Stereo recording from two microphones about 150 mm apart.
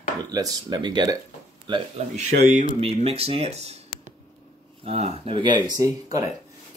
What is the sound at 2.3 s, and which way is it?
Speech, 90° right.